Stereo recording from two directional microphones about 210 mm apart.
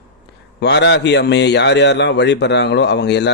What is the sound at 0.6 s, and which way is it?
A man's voice, 55° left (ahead or behind).